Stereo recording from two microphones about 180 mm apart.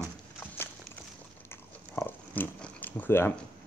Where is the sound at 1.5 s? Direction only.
10° left (ahead or behind).